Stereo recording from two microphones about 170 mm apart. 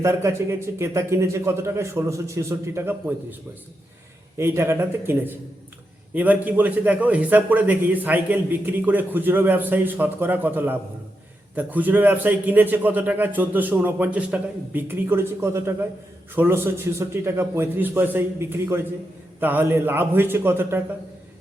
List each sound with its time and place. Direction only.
0.0 s a man's voice: 15° right (ahead or behind)
4.4 s a man's voice: 15° right (ahead or behind)